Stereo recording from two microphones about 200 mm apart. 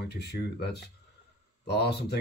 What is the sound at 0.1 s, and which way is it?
Speech, 55° left (ahead or behind).